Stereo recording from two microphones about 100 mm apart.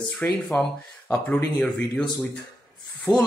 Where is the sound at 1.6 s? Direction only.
5° left (ahead or behind).